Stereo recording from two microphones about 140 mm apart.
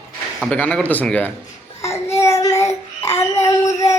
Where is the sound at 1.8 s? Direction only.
20° left (ahead or behind).